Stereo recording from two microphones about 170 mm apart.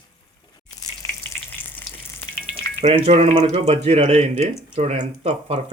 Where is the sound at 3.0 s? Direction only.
35° right (ahead or behind).